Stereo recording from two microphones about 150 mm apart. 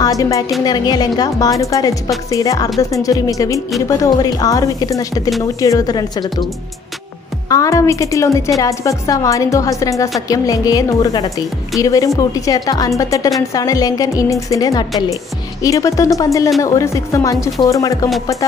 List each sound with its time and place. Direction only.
0.0 s a woman's voice: 20° left (ahead or behind)
7.4 s a woman's voice: 20° left (ahead or behind)